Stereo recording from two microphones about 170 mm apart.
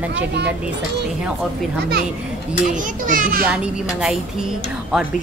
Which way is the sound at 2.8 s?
50° right (ahead or behind).